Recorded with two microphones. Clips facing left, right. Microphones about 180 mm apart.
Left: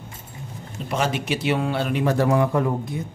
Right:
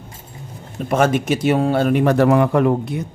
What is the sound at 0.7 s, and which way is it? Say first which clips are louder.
A man's voice: right 8 dB; 50° right (ahead or behind).